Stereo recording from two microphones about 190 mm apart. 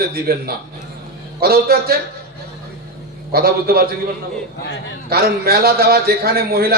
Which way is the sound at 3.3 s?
50° right (ahead or behind).